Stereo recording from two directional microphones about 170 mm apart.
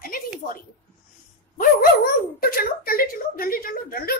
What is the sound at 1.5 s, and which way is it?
Dog, 55° left (ahead or behind).